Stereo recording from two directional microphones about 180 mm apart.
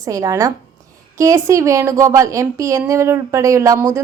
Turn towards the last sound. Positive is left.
turn(degrees=-15)  # may be behind; listen again after turning